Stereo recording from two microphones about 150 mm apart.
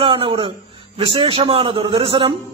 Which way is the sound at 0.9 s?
35° right (ahead or behind).